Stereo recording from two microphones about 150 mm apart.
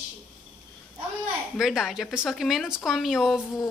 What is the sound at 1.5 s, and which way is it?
A woman's voice, 5° right (ahead or behind).